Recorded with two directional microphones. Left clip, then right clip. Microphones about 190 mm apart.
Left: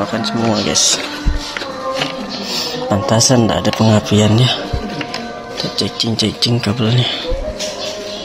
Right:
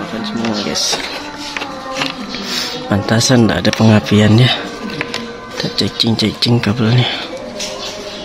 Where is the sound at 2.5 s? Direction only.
30° right (ahead or behind).